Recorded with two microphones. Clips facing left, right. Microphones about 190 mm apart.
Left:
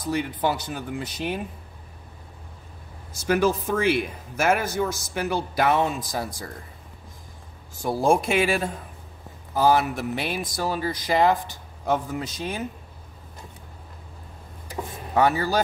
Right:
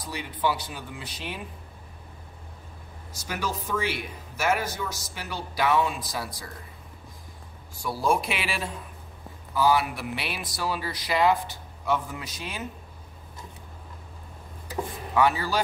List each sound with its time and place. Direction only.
0.0 s speech: 50° left (ahead or behind)
3.1 s speech: 50° left (ahead or behind)
7.8 s speech: 50° left (ahead or behind)
15.1 s speech: 45° left (ahead or behind)